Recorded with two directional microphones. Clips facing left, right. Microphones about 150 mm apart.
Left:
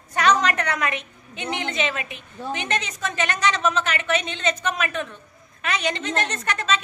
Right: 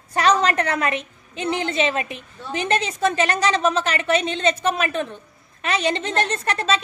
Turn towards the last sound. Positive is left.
turn(degrees=-35)  # may be behind; listen again after turning